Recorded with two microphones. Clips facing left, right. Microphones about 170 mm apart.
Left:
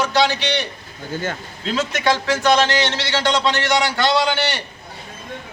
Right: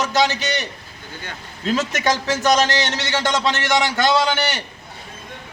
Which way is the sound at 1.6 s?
40° right (ahead or behind).